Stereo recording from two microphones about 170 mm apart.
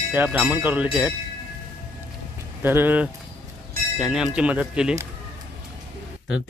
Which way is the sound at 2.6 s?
10° right (ahead or behind).